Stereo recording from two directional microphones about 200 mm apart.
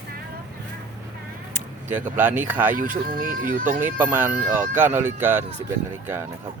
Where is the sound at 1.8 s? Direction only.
10° right (ahead or behind).